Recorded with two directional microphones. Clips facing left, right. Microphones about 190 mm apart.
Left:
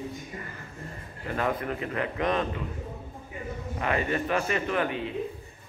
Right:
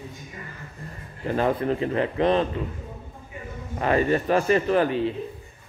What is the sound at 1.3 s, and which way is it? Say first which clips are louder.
Speech: right 6 dB; 30° right (ahead or behind).